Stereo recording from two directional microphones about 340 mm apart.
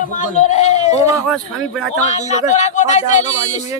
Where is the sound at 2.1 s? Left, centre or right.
Centre.